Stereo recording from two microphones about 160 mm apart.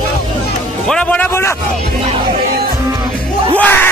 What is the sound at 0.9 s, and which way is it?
Music, 5° left (ahead or behind).